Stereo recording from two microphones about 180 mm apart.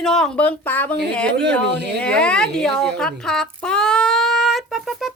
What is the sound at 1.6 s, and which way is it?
Speech, 70° right (ahead or behind).